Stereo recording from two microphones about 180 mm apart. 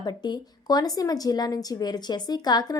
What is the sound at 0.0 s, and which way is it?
A woman's voice, 20° left (ahead or behind).